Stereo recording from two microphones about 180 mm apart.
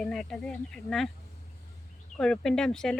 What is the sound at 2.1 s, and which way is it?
Speech, 5° left (ahead or behind).